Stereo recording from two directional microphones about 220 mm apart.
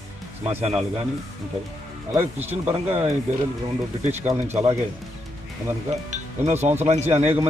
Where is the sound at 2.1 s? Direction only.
10° right (ahead or behind).